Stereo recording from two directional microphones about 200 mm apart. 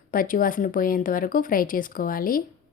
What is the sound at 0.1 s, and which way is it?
Speech, 45° left (ahead or behind).